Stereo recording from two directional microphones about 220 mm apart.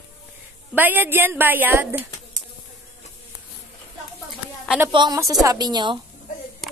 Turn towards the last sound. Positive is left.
turn(degrees=-20)  # may be behind; listen again after turning